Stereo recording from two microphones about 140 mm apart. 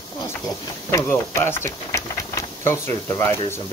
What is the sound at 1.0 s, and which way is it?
Speech, 15° left (ahead or behind).